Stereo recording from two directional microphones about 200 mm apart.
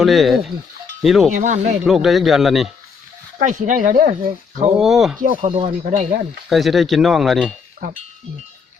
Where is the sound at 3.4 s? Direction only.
40° right (ahead or behind).